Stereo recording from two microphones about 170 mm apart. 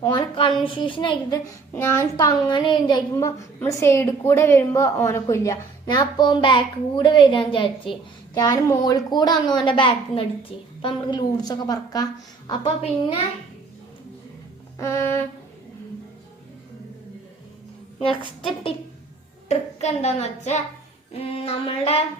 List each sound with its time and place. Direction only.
0.0 s a woman's voice: 25° left (ahead or behind)
2.1 s a woman's voice: 25° left (ahead or behind)
12.5 s a woman's voice: 30° left (ahead or behind)
14.8 s a sound: 15° left (ahead or behind)
19.5 s a woman's voice: 40° left (ahead or behind)